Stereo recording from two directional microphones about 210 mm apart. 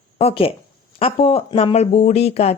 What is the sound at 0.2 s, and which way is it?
Speech, 25° left (ahead or behind).